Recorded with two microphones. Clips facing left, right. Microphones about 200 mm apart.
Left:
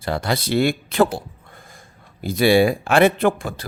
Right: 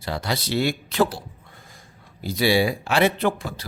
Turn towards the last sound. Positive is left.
turn(degrees=50)  # may be behind; listen again after turning